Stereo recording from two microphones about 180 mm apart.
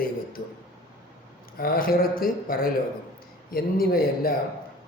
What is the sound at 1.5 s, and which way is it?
Speech, 55° left (ahead or behind).